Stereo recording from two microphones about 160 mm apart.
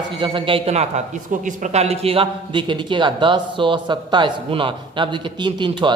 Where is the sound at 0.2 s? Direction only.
30° right (ahead or behind).